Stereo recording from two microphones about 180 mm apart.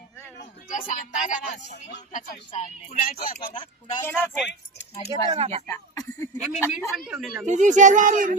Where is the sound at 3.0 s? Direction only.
50° left (ahead or behind).